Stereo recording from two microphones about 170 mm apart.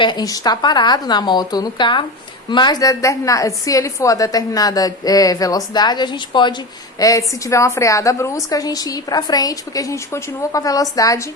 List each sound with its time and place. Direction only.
0.0 s a woman's voice: 25° left (ahead or behind)